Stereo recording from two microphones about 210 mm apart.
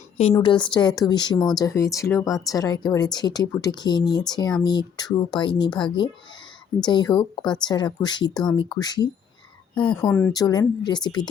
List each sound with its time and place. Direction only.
0.3 s a woman's voice: 20° left (ahead or behind)